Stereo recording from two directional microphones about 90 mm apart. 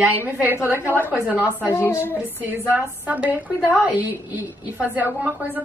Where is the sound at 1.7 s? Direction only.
25° left (ahead or behind).